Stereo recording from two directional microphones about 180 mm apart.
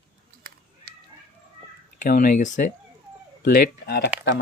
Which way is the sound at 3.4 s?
55° left (ahead or behind).